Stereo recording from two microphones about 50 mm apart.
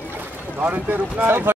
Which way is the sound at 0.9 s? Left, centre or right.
Right.